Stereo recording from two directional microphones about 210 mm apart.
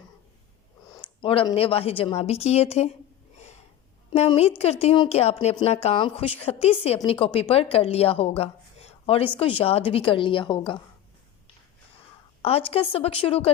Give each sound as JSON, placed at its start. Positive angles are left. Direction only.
{"t": 0.9, "sound": "a woman's voice", "side_deg": 20}
{"t": 3.3, "sound": "snort", "side_deg": 30}
{"t": 4.1, "sound": "a woman's voice", "side_deg": 30}
{"t": 12.4, "sound": "a woman's voice", "side_deg": 30}